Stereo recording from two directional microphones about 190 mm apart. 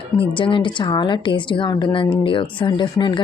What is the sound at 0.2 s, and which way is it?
Speech, 25° left (ahead or behind).